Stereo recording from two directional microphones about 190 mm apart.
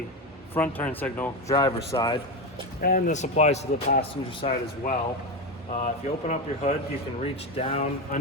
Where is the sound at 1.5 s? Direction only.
20° left (ahead or behind).